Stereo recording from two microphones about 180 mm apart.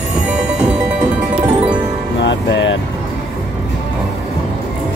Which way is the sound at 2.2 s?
90° left.